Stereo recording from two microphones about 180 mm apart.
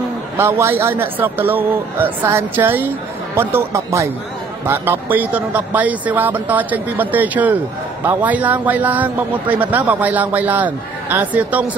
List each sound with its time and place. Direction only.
0.4 s a man's voice: 15° right (ahead or behind)